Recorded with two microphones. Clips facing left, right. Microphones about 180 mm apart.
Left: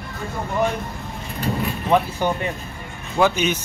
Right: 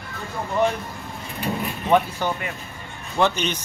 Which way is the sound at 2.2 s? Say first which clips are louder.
Left 4 dB; 15° left (ahead or behind).